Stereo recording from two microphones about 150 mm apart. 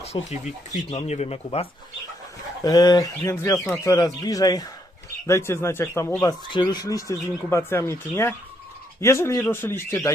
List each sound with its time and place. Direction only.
0.0 s speech: 45° left (ahead or behind)
2.6 s speech: 25° left (ahead or behind)
6.5 s speech: 30° left (ahead or behind)